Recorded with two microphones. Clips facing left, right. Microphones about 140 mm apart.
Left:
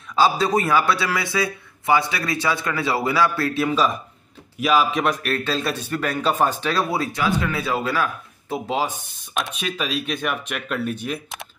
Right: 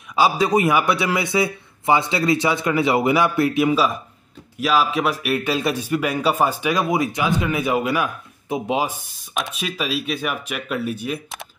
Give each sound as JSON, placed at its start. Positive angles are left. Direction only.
{"t": 0.1, "sound": "a man's voice", "side_deg": -15}
{"t": 4.6, "sound": "a man's voice", "side_deg": 0}
{"t": 9.3, "sound": "speech", "side_deg": 0}